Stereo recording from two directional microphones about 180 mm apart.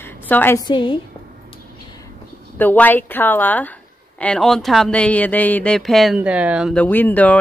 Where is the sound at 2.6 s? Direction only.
10° left (ahead or behind); by 6.7 s 5° right (ahead or behind).